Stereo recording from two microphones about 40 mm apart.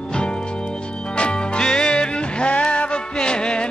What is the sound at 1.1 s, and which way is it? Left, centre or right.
Music, left.